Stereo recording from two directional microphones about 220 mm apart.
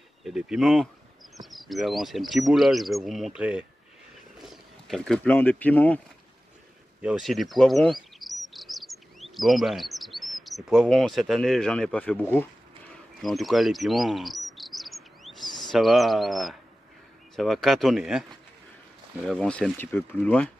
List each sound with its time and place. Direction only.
0.2 s speech: 5° right (ahead or behind)
7.0 s chirp: 5° right (ahead or behind)
15.7 s speech: centre (ahead or behind)
19.2 s speech: 5° left (ahead or behind)